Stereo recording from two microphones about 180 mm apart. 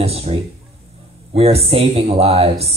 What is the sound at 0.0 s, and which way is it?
Speech, 35° right (ahead or behind).